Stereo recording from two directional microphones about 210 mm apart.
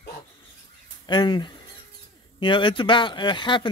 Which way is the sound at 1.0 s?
20° left (ahead or behind).